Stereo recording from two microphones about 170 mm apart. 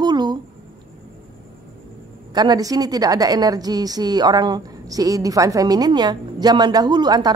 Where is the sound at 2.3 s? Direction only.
25° right (ahead or behind).